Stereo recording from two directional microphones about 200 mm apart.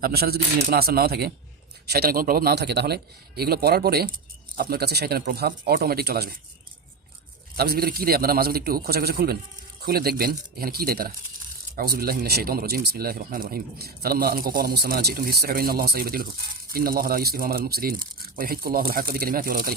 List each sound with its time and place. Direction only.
0.0 s speech: 50° right (ahead or behind)
7.5 s speech: 50° right (ahead or behind)